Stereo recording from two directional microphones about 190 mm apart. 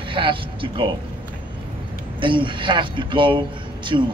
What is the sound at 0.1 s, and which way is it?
Speech, 25° right (ahead or behind).